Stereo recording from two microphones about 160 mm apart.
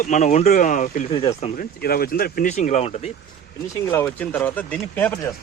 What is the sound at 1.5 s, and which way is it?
Speech, 70° left (ahead or behind).